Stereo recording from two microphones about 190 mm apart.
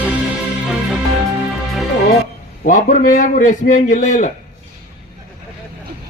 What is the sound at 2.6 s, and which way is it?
Speech, 45° left (ahead or behind).